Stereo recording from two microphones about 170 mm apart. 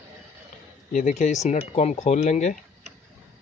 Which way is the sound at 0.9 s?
45° left (ahead or behind).